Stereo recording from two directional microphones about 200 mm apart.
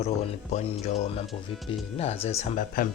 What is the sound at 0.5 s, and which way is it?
Speech, 30° left (ahead or behind).